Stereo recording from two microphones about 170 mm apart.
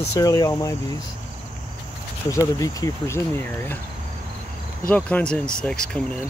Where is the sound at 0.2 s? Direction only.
20° left (ahead or behind).